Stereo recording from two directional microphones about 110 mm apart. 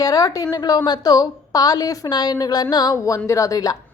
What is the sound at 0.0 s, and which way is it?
A woman's voice, 35° left (ahead or behind).